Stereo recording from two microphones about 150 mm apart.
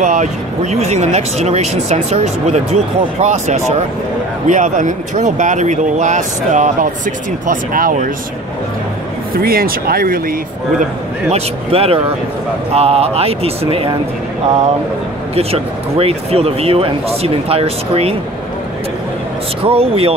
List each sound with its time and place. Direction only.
0.0 s speech: 55° right (ahead or behind)
9.3 s speech: 80° right
11.2 s speech: 45° right (ahead or behind)
15.3 s speech: 40° right (ahead or behind)
19.6 s speech: 40° right (ahead or behind)